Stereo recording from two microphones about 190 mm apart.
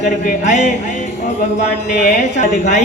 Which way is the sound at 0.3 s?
40° left (ahead or behind).